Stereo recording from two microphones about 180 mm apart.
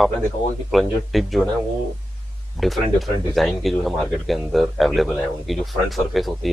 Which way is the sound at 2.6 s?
Centre (ahead or behind).